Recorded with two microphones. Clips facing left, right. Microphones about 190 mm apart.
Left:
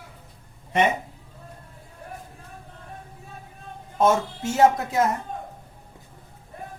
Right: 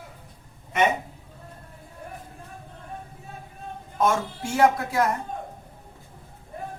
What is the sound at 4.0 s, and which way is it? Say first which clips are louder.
Speech: left 3 dB; 20° left (ahead or behind).